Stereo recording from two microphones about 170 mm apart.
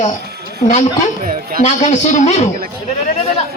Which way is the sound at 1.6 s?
45° left (ahead or behind).